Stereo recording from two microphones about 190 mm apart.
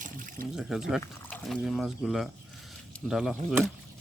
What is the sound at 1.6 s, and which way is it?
Speech, centre (ahead or behind).